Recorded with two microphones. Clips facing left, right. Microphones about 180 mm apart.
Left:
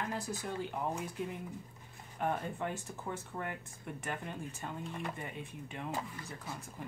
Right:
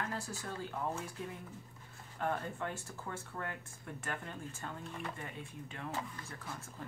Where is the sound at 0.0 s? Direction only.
15° left (ahead or behind).